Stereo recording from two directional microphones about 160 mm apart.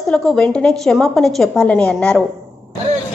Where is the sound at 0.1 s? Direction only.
5° left (ahead or behind).